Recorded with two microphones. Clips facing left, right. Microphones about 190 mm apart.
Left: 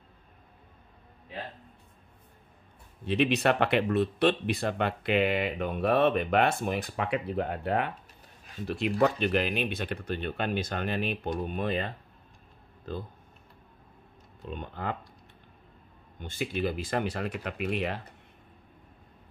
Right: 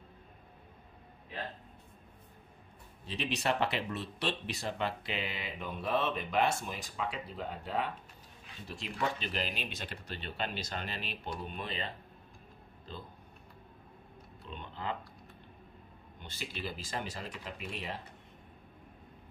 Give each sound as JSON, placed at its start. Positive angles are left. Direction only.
{"t": 3.1, "sound": "speech", "side_deg": 60}
{"t": 14.5, "sound": "speech", "side_deg": 50}
{"t": 16.2, "sound": "speech", "side_deg": 50}